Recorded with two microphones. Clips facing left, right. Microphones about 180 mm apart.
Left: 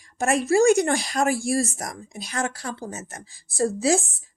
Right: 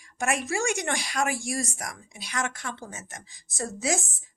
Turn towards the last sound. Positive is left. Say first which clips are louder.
# left 8 dB
turn(degrees=35)  # may be behind; listen again after turning